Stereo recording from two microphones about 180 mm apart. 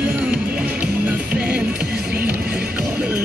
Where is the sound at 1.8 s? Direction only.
65° right (ahead or behind).